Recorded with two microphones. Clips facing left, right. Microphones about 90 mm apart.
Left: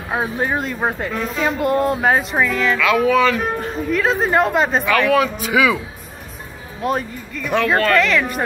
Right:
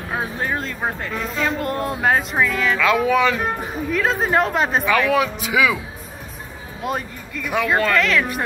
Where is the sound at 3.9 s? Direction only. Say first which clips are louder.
Left 2 dB; centre (ahead or behind).